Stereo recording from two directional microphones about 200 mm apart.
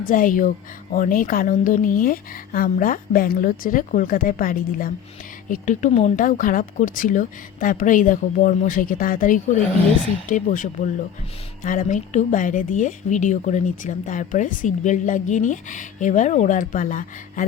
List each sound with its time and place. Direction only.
0.1 s speech: 40° left (ahead or behind)